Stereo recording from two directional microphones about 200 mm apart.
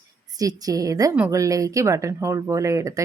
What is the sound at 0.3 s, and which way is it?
A woman's voice, 20° right (ahead or behind).